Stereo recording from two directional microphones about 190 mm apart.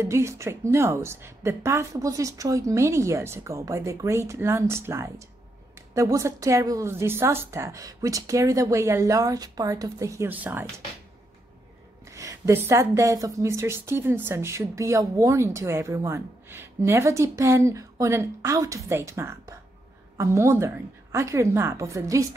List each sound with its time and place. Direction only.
0.0 s speech: 15° right (ahead or behind)
12.1 s speech: 15° right (ahead or behind)